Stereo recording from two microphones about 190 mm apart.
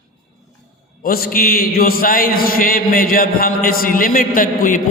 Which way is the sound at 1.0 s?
50° left (ahead or behind).